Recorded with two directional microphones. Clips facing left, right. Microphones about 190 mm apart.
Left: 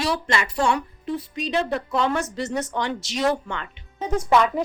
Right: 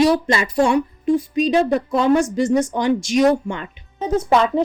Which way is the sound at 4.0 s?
25° right (ahead or behind).